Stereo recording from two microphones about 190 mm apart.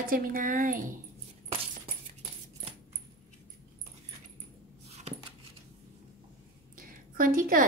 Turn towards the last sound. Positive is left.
turn(degrees=-50)  # may be behind; listen again after turning